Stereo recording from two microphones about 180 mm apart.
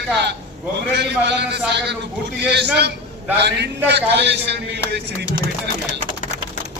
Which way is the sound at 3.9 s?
70° right (ahead or behind).